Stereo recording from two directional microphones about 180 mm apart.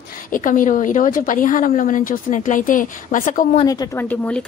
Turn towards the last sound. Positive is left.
turn(degrees=5)  # may be behind; listen again after turning